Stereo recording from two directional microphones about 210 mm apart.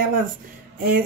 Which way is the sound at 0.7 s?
45° right (ahead or behind).